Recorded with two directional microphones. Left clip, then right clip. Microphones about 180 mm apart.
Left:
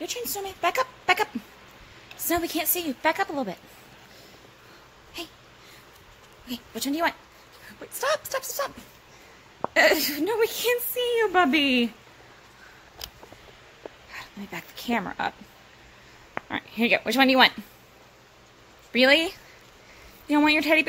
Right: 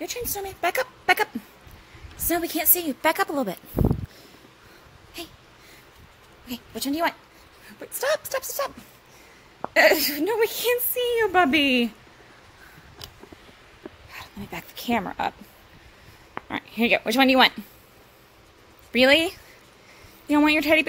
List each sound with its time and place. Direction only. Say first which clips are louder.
0.0 s a woman's voice: right 1 dB; 10° right (ahead or behind); by 3.5 s 30° right (ahead or behind)
5.2 s a sound: left 1 dB; 20° right (ahead or behind)
6.7 s a woman's voice: right 1 dB; 20° right (ahead or behind)
7.8 s a woman's voice: right 1 dB; 30° right (ahead or behind)
9.8 s a woman's voice: right 2 dB; 30° right (ahead or behind)
14.1 s speech: right 1 dB; 30° right (ahead or behind)
16.4 s a woman's voice: right 1 dB; 25° right (ahead or behind)
18.9 s a woman's voice: right 1 dB; 30° right (ahead or behind)